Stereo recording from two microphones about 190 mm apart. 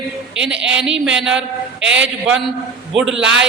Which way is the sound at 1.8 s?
70° right (ahead or behind).